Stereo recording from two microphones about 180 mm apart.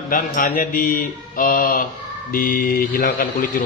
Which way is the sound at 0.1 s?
50° left (ahead or behind).